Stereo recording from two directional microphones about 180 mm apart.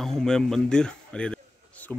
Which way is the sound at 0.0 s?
Centre (ahead or behind).